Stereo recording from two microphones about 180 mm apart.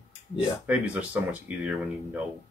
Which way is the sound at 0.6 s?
5° right (ahead or behind).